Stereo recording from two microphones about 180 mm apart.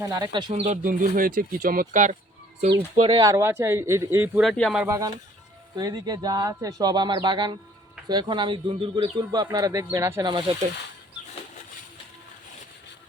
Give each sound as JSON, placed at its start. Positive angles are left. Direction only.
{"t": 0.0, "sound": "speech", "side_deg": -20}
{"t": 2.9, "sound": "speech", "side_deg": -30}
{"t": 3.2, "sound": "speech", "side_deg": -20}
{"t": 4.4, "sound": "speech", "side_deg": 0}
{"t": 4.9, "sound": "speech", "side_deg": -20}